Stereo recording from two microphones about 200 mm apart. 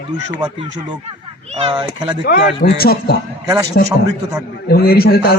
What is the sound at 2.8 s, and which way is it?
Speech, 50° left (ahead or behind).